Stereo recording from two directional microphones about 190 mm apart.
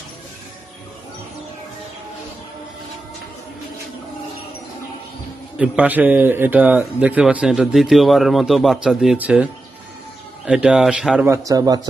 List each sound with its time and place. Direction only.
5.6 s a man's voice: 5° right (ahead or behind)
11.2 s a man's voice: 15° right (ahead or behind)